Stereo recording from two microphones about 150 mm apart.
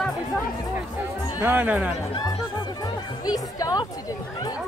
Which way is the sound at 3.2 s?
25° left (ahead or behind).